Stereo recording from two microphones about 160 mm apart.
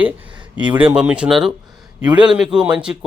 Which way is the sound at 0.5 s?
10° right (ahead or behind).